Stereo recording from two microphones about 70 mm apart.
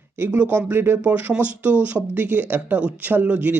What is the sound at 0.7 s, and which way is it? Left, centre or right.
Speech, right.